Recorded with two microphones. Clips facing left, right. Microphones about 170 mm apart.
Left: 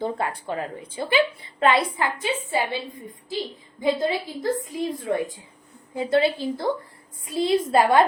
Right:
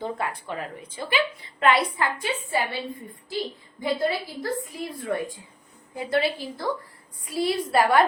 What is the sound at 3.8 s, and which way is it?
A woman's voice, 20° left (ahead or behind).